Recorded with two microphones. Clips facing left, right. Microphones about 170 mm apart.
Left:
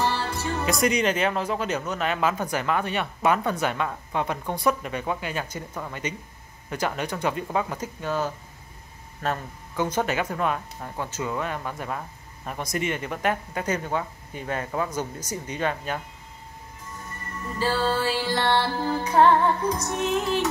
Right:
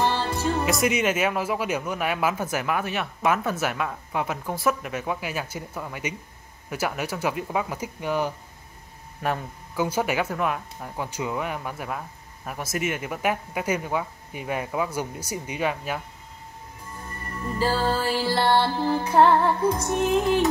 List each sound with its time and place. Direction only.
0.0 s music: 15° right (ahead or behind)
0.7 s speech: 5° right (ahead or behind)
17.6 s speech: 15° right (ahead or behind)